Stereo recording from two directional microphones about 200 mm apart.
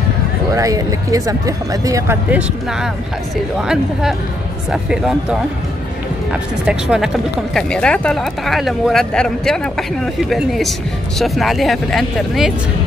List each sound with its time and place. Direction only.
0.6 s speech: 15° right (ahead or behind)
6.6 s speech: 5° right (ahead or behind)